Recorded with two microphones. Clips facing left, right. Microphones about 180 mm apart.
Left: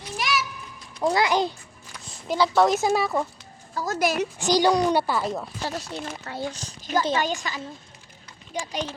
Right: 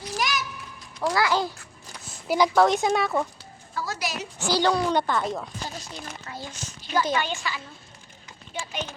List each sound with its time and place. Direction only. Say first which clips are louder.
0.2 s children playing: left 2 dB; centre (ahead or behind)
1.1 s a child's voice: left 1 dB; 20° left (ahead or behind)
2.2 s speech: right 1 dB; 15° right (ahead or behind)
2.6 s speech: left 2 dB; centre (ahead or behind)
3.8 s speech: left 7 dB; 50° left (ahead or behind)
4.4 s a woman's voice: left 2 dB; 15° left (ahead or behind)
5.6 s speech: left 6 dB; 65° left (ahead or behind)
6.5 s a woman's voice: even; 35° left (ahead or behind)